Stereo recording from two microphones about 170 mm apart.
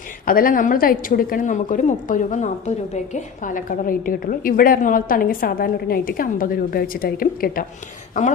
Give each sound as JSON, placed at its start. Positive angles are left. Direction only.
{"t": 0.3, "sound": "a woman's voice", "side_deg": 55}